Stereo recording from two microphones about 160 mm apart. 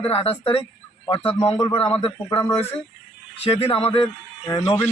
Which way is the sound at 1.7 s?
35° left (ahead or behind).